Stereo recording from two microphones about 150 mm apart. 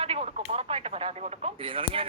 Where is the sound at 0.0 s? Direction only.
45° right (ahead or behind).